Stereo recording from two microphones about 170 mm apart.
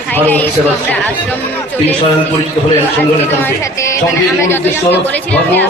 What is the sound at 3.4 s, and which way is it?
A woman's voice, 15° left (ahead or behind).